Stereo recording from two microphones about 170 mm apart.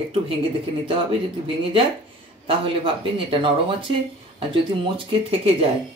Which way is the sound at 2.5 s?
30° right (ahead or behind).